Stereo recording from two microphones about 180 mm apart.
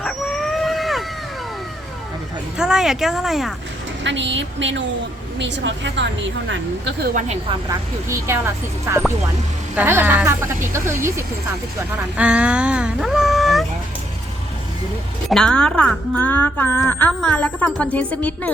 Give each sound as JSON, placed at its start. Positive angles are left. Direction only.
{"t": 0.0, "sound": "a sound", "side_deg": 5}
{"t": 2.6, "sound": "a woman's voice", "side_deg": -5}
{"t": 4.0, "sound": "a woman's voice", "side_deg": -90}
{"t": 7.0, "sound": "speech", "side_deg": -50}
{"t": 7.7, "sound": "speech", "side_deg": -15}
{"t": 15.3, "sound": "speech", "side_deg": 5}